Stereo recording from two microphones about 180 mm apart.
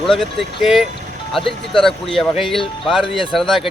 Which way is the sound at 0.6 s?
Centre (ahead or behind).